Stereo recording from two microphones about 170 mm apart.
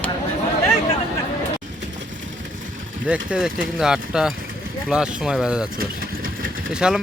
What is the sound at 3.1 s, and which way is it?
Speech, 5° right (ahead or behind).